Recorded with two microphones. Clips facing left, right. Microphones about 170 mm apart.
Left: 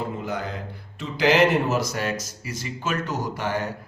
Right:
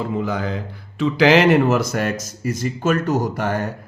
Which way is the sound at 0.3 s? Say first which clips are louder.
Right 5 dB; 90° right.